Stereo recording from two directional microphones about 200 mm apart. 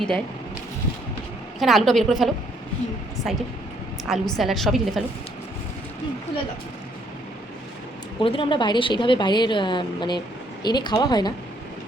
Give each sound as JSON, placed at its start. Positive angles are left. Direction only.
{"t": 1.5, "sound": "a woman's voice", "side_deg": 0}
{"t": 8.2, "sound": "a woman's voice", "side_deg": 25}